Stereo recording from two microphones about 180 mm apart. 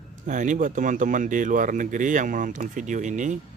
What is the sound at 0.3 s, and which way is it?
Speech, 45° right (ahead or behind).